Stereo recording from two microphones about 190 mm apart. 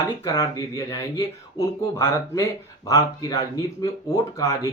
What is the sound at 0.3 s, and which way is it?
Speech, 20° left (ahead or behind).